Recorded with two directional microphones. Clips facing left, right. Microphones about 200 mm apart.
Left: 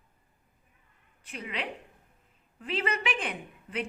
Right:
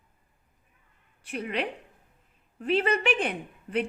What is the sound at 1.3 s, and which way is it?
Speech, 45° right (ahead or behind).